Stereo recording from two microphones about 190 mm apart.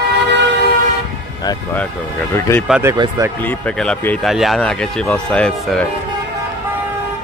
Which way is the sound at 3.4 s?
5° left (ahead or behind).